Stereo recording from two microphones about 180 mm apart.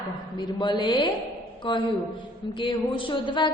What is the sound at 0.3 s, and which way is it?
A woman's voice, 25° left (ahead or behind).